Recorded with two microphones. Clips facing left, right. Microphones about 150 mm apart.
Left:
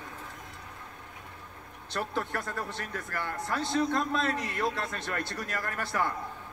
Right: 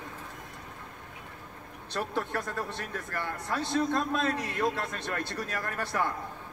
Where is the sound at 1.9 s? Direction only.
15° right (ahead or behind).